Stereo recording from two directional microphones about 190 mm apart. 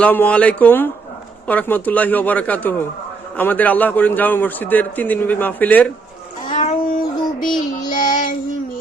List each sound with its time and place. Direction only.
0.0 s a man's voice: 10° left (ahead or behind)
6.6 s music: 45° left (ahead or behind)
7.9 s child singing: 45° left (ahead or behind)